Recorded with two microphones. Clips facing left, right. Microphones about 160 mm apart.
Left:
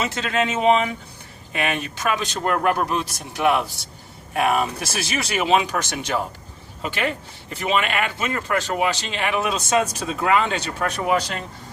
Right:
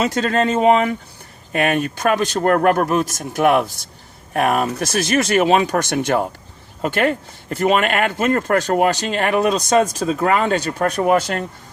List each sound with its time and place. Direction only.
0.0 s speech: 40° right (ahead or behind)